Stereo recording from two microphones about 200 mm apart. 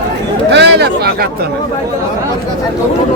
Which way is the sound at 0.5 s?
55° right (ahead or behind).